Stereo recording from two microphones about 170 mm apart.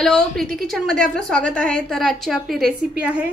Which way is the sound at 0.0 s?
Centre (ahead or behind).